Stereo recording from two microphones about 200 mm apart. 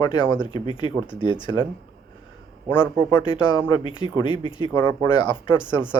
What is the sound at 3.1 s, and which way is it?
Speech, 25° left (ahead or behind).